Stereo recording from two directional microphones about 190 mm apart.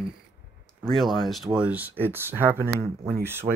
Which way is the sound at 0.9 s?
Centre (ahead or behind).